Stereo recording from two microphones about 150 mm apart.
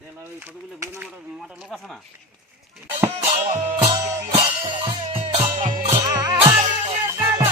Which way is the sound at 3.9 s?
20° right (ahead or behind).